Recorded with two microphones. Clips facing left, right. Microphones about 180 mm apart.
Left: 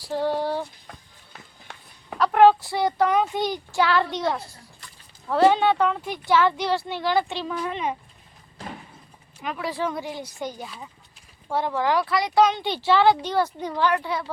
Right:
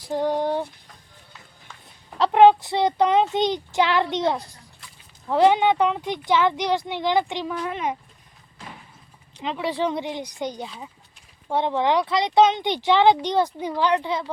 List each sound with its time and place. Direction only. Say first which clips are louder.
0.0 s speech: right 2 dB; 15° right (ahead or behind)
2.1 s speech: right 2 dB; 25° right (ahead or behind); by 7.9 s 10° right (ahead or behind)
9.4 s speech: right 3 dB; 20° right (ahead or behind)